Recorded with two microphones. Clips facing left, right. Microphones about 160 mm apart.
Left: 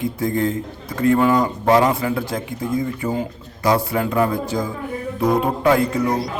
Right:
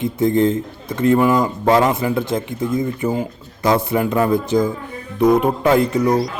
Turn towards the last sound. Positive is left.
turn(degrees=-20)  # may be behind; listen again after turning